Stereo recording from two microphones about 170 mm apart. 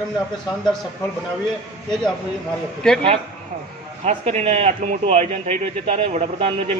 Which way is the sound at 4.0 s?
40° right (ahead or behind).